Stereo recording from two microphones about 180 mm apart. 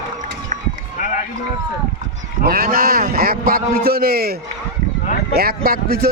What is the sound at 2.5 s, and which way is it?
A man's voice, 55° right (ahead or behind).